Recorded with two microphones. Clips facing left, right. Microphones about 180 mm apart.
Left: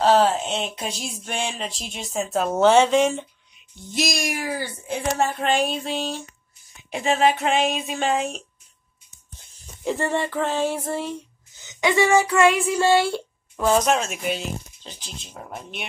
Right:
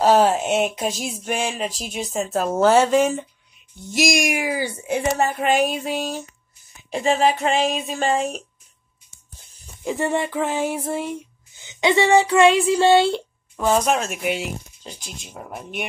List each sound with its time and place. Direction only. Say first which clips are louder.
0.0 s a sound: right 2 dB; 10° right (ahead or behind)
3.9 s speech: right 5 dB; 10° right (ahead or behind)
6.9 s a sound: right 1 dB; centre (ahead or behind)
9.9 s speech: right 3 dB; 15° right (ahead or behind)
11.6 s speech: right 2 dB; 25° right (ahead or behind)
13.6 s speech: even; 5° right (ahead or behind)